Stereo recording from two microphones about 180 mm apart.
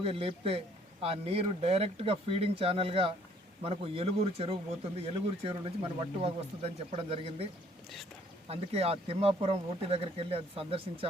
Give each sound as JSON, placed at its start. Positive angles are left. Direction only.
{"t": 0.0, "sound": "speech", "side_deg": -30}
{"t": 8.4, "sound": "speech", "side_deg": -35}